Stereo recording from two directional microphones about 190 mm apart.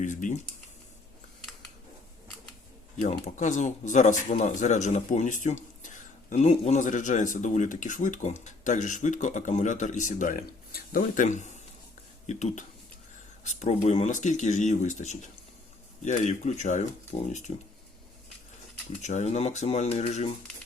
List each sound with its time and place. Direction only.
0.0 s speech: 40° left (ahead or behind)
3.0 s speech: 40° left (ahead or behind)
19.0 s speech: 35° left (ahead or behind)